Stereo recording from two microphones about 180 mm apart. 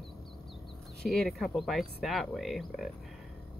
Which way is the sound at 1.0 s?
Centre (ahead or behind).